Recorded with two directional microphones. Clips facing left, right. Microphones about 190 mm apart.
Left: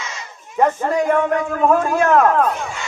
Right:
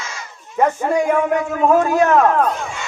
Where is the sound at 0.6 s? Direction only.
5° right (ahead or behind).